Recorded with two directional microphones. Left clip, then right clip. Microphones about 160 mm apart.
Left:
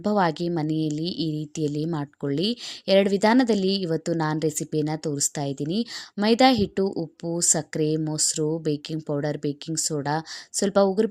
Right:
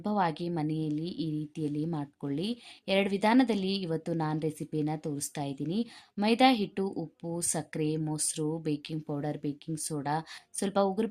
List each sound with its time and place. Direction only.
0.0 s speech: 40° left (ahead or behind)